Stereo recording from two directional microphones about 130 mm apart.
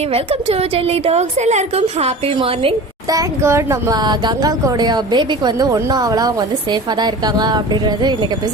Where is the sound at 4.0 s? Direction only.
35° right (ahead or behind).